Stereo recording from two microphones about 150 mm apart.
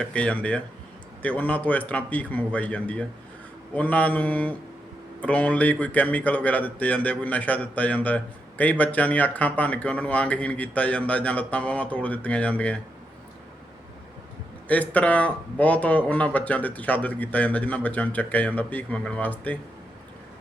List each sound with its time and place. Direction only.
0.0 s a man's voice: 5° left (ahead or behind)
14.7 s a man's voice: 10° left (ahead or behind)